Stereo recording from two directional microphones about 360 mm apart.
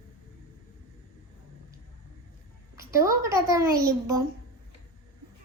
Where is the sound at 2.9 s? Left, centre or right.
Centre.